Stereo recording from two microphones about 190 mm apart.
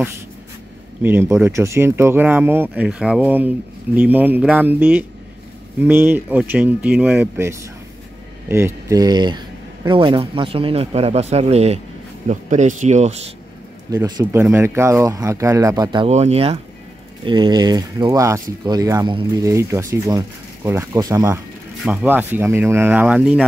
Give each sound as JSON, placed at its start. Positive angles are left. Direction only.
{"t": 1.0, "sound": "speech", "side_deg": -10}
{"t": 13.8, "sound": "speech", "side_deg": -20}
{"t": 16.1, "sound": "speech", "side_deg": -35}